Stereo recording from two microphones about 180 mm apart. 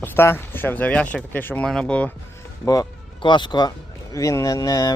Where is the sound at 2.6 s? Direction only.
20° left (ahead or behind).